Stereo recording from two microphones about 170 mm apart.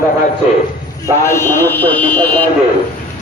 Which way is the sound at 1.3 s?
15° left (ahead or behind).